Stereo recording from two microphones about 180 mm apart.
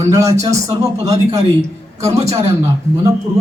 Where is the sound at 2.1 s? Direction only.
35° right (ahead or behind).